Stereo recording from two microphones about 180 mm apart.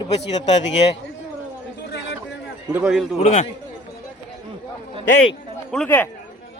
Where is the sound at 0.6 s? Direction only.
90° left.